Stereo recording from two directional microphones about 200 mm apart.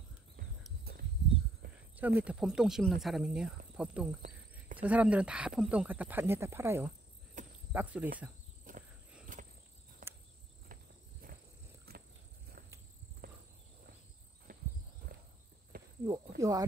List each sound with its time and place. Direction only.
0.9 s a sound: 50° right (ahead or behind)
1.6 s cricket: 50° right (ahead or behind)
2.0 s speech: 10° right (ahead or behind)
7.4 s cricket: 40° right (ahead or behind)
7.7 s speech: 10° right (ahead or behind)
8.7 s cricket: 40° right (ahead or behind)
10.0 s cricket: 40° right (ahead or behind)
11.9 s a sound: 50° right (ahead or behind)
13.2 s walk: 50° right (ahead or behind)
14.5 s insect: 45° right (ahead or behind)
16.1 s cricket: 15° right (ahead or behind)